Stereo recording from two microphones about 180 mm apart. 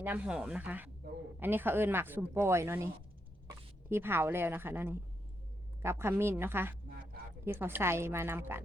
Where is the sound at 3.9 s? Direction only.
10° right (ahead or behind).